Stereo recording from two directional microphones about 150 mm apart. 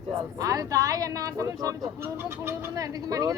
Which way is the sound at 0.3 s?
25° right (ahead or behind).